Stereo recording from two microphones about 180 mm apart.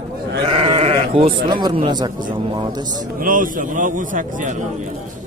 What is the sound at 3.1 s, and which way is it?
Speech, 50° right (ahead or behind).